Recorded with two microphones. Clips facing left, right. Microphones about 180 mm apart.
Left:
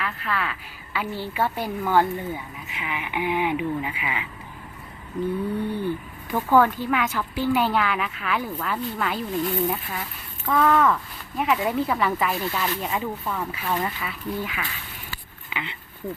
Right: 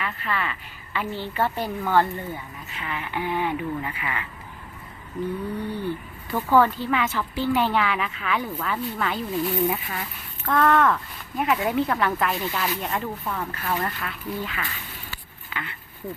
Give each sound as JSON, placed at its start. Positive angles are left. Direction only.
{"t": 0.0, "sound": "speech", "side_deg": 0}
{"t": 6.3, "sound": "speech", "side_deg": 0}
{"t": 15.5, "sound": "speech", "side_deg": 15}